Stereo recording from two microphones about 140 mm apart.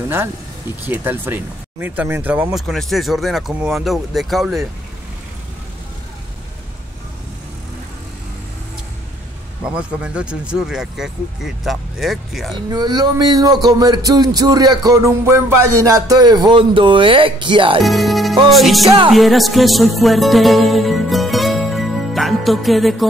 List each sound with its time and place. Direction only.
0.8 s speech: 15° right (ahead or behind)
2.5 s speech: centre (ahead or behind)
9.6 s speech: 10° right (ahead or behind)
12.5 s speech: 30° right (ahead or behind)
17.8 s speech: centre (ahead or behind)
19.1 s music: centre (ahead or behind)